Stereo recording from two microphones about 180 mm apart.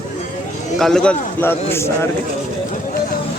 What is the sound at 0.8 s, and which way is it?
A man's voice, 5° left (ahead or behind).